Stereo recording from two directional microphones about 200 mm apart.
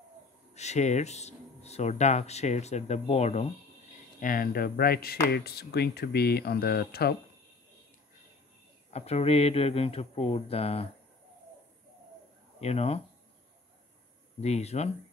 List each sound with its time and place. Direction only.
0.6 s speech: 35° left (ahead or behind)
4.2 s speech: 45° left (ahead or behind)
8.9 s speech: 30° left (ahead or behind)
12.5 s speech: 30° left (ahead or behind)
14.4 s speech: 35° left (ahead or behind)